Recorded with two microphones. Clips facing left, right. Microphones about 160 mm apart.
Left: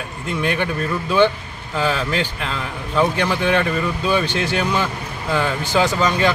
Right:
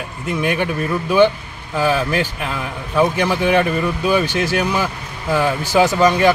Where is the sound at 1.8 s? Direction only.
10° right (ahead or behind).